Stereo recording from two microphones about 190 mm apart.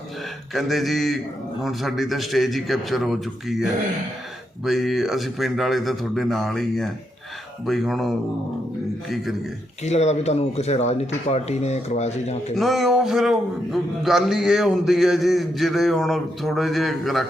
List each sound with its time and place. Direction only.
0.5 s a man's voice: centre (ahead or behind)
9.8 s speech: 35° left (ahead or behind)
12.5 s a man's voice: centre (ahead or behind)